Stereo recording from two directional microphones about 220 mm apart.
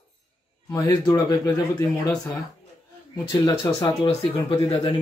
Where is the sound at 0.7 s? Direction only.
15° left (ahead or behind).